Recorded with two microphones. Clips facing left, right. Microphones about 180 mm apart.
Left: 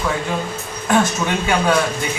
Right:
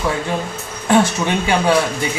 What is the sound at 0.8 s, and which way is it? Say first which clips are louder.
Speech: right 2 dB; 25° right (ahead or behind).